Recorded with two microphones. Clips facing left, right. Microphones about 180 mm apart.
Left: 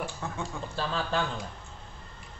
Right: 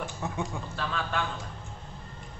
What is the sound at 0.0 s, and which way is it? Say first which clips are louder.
Speech: right 2 dB; 20° right (ahead or behind).